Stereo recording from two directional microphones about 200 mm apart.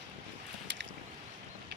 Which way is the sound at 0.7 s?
60° right (ahead or behind).